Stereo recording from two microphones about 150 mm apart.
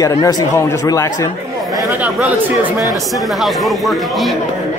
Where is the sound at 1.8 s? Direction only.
10° right (ahead or behind).